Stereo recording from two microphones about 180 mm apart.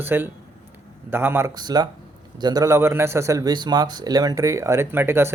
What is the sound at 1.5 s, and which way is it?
A man's voice, 20° right (ahead or behind).